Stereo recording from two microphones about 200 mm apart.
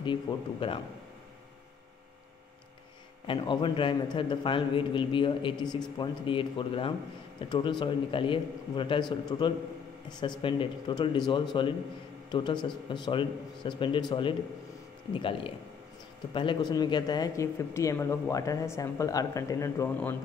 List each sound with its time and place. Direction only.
0.0 s a man's voice: 25° left (ahead or behind)
3.3 s a man's voice: 25° left (ahead or behind)